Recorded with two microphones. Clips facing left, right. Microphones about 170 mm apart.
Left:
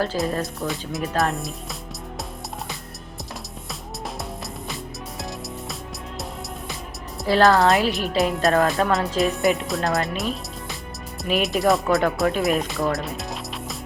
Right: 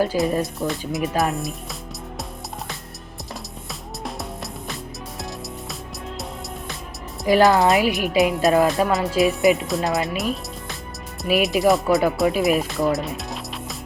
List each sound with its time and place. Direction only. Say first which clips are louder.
0.3 s a woman's voice: right 3 dB; 10° right (ahead or behind)
0.7 s speech: right 3 dB; centre (ahead or behind)
7.3 s a woman's voice: right 1 dB; 15° right (ahead or behind)
8.2 s speech: right 2 dB; centre (ahead or behind)